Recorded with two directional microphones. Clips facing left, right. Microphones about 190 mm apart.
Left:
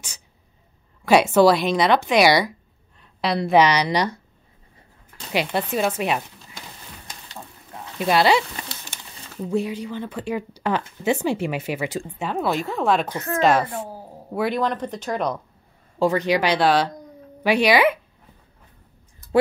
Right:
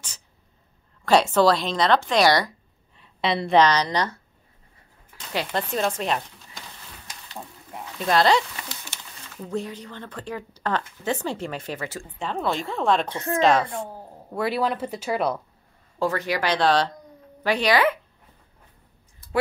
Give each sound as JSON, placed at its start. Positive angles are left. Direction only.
{"t": 1.0, "sound": "speech", "side_deg": 10}
{"t": 3.0, "sound": "a woman's voice", "side_deg": 0}
{"t": 5.3, "sound": "speech", "side_deg": 10}
{"t": 8.0, "sound": "a woman's voice", "side_deg": 10}
{"t": 14.5, "sound": "speech", "side_deg": -5}
{"t": 16.0, "sound": "speech", "side_deg": 15}